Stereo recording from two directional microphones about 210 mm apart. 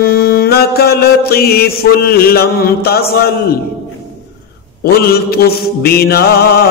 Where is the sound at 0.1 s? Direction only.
45° left (ahead or behind).